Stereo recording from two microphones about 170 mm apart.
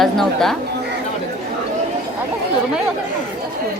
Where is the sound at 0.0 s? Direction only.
Centre (ahead or behind).